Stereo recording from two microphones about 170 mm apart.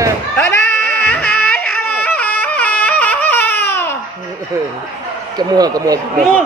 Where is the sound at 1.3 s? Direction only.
65° left (ahead or behind).